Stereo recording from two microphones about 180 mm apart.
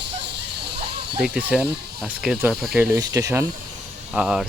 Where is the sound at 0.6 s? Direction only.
70° right (ahead or behind).